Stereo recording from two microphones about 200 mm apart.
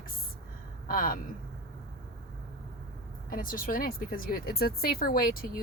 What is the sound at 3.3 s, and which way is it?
Speech, 45° left (ahead or behind).